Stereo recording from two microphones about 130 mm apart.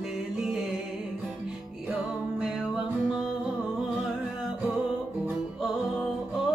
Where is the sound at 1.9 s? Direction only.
5° right (ahead or behind).